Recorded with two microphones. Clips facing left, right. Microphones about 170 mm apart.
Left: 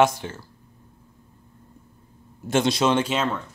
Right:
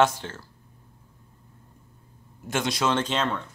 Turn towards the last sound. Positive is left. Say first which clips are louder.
# left 3 dB
turn(degrees=5)  # may be behind; listen again after turning